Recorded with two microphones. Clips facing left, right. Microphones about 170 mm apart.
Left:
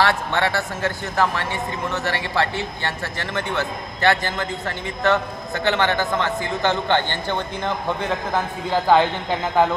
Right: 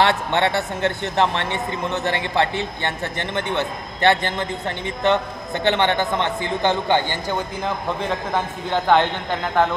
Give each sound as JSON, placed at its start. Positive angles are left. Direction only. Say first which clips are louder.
{"t": 0.0, "sound": "a man's voice", "louder": "right 2 dB", "side_deg": -20}